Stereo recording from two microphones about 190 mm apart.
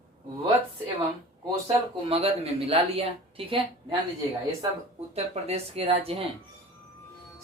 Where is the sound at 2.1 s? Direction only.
30° right (ahead or behind).